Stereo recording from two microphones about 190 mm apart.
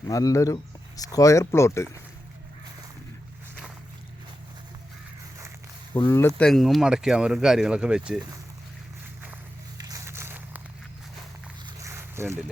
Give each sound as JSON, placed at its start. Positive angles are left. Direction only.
{"t": 0.1, "sound": "speech", "side_deg": 15}
{"t": 6.0, "sound": "speech", "side_deg": 15}
{"t": 6.4, "sound": "speech", "side_deg": 0}
{"t": 9.7, "sound": "a sound", "side_deg": -20}
{"t": 11.6, "sound": "boat", "side_deg": -15}